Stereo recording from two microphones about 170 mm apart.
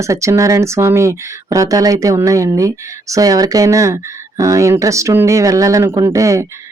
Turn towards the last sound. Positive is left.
turn(degrees=-20)  # may be behind; listen again after turning